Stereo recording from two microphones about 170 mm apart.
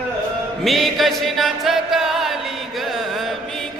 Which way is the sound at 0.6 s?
Centre (ahead or behind).